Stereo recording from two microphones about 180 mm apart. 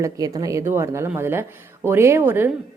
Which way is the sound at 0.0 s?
20° right (ahead or behind).